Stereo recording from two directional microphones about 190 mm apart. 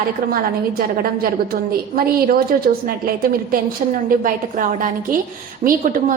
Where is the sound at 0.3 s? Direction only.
50° right (ahead or behind).